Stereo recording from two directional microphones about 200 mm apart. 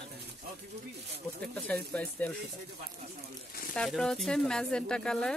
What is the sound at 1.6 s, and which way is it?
Speech, 5° left (ahead or behind).